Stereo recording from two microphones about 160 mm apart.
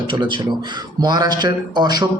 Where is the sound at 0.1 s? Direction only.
30° right (ahead or behind).